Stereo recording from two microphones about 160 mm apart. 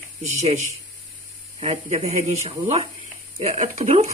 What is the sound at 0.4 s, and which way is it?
Speech, 45° right (ahead or behind).